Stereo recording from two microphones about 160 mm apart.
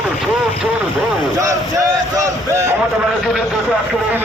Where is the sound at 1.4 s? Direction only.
20° right (ahead or behind).